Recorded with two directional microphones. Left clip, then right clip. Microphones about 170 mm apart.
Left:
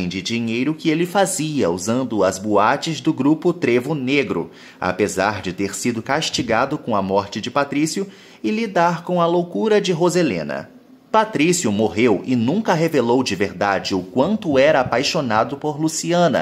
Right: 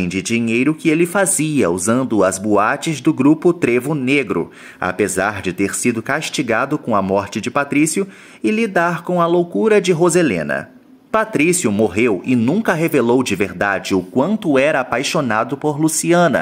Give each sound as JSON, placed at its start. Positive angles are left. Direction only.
{"t": 0.0, "sound": "speech", "side_deg": -20}
{"t": 12.4, "sound": "speech", "side_deg": -5}
{"t": 12.6, "sound": "speech", "side_deg": -20}